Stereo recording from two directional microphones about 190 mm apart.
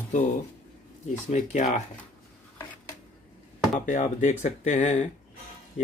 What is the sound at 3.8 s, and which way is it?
Speech, 40° left (ahead or behind).